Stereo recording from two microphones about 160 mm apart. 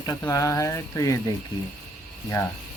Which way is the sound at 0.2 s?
20° left (ahead or behind).